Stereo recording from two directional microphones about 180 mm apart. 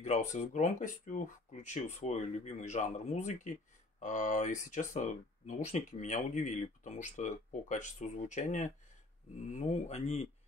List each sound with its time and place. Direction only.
0.0 s speech: 40° left (ahead or behind)